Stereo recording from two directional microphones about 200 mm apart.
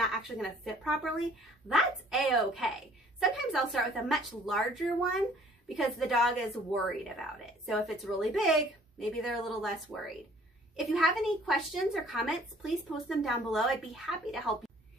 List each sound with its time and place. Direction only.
0.0 s a woman's voice: centre (ahead or behind)
5.7 s a woman's voice: centre (ahead or behind)